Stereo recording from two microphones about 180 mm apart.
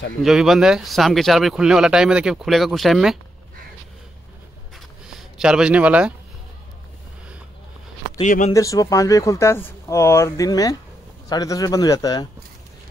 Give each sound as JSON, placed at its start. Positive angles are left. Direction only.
{"t": 0.2, "sound": "speech", "side_deg": 0}
{"t": 5.0, "sound": "speech", "side_deg": -5}
{"t": 8.2, "sound": "speech", "side_deg": 40}
{"t": 8.5, "sound": "speech", "side_deg": 20}